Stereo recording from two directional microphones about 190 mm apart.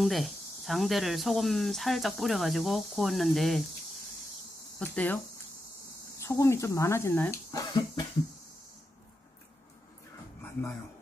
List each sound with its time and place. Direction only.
0.0 s speech: centre (ahead or behind)
4.7 s speech: 10° left (ahead or behind)